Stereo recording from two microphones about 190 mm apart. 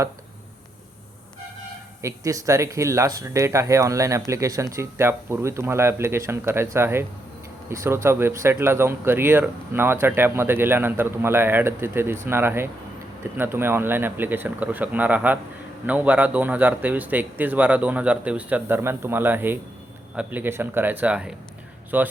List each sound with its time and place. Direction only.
2.0 s speech: 15° right (ahead or behind)